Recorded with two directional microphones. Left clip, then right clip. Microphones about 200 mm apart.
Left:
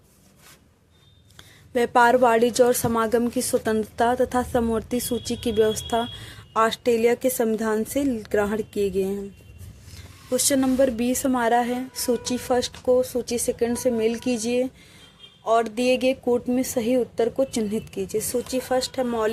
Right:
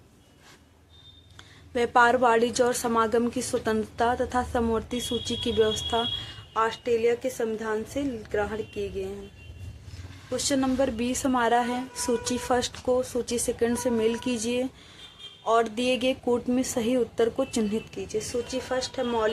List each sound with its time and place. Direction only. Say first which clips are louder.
1.7 s a woman's voice: left 3 dB; 40° left (ahead or behind)
6.5 s speech: left 5 dB; 55° left (ahead or behind)
10.3 s a woman's voice: left 5 dB; 40° left (ahead or behind)